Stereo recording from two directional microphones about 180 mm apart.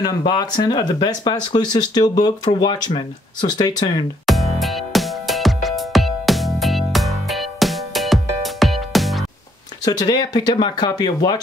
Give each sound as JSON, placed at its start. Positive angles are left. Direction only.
{"t": 0.0, "sound": "speech", "side_deg": 20}
{"t": 4.3, "sound": "music", "side_deg": 0}
{"t": 9.8, "sound": "speech", "side_deg": 20}